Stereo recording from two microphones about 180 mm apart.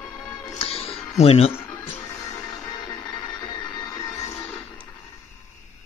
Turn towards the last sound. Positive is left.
turn(degrees=35)  # may be behind; listen again after turning